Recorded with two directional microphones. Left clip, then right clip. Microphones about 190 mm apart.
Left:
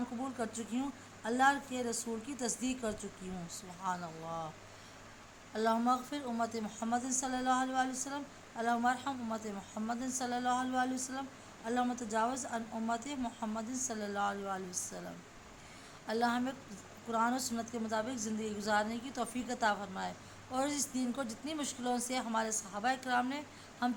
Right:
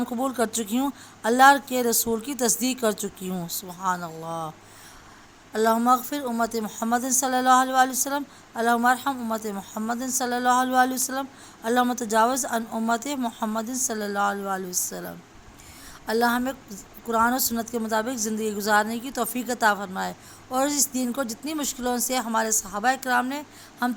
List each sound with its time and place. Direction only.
0.2 s a woman's voice: 50° right (ahead or behind)
5.5 s a woman's voice: 40° right (ahead or behind)